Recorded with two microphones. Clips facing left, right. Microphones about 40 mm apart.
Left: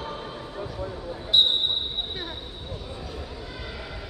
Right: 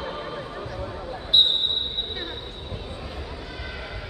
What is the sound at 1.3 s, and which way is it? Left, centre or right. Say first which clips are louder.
Basketball bounce: right 1 dB; centre.